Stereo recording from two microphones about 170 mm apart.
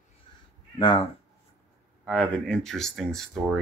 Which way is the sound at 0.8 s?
30° left (ahead or behind).